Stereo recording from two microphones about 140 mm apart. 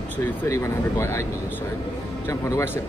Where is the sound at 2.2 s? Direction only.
15° left (ahead or behind).